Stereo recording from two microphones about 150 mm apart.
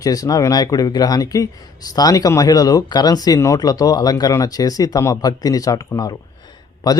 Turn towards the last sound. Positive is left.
turn(degrees=25)  # may be behind; listen again after turning